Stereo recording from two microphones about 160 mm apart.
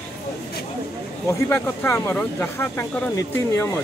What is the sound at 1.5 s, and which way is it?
Speech, 15° left (ahead or behind).